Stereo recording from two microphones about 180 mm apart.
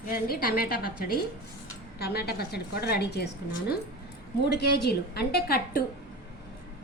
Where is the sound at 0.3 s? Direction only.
55° left (ahead or behind).